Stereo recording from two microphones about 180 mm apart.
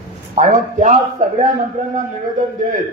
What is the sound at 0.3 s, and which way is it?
Speech, 45° right (ahead or behind).